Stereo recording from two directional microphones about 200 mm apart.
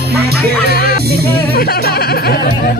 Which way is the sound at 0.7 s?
50° left (ahead or behind).